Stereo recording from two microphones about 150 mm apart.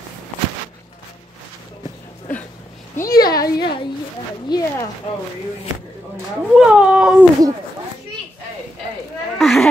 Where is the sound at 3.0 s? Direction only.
85° left.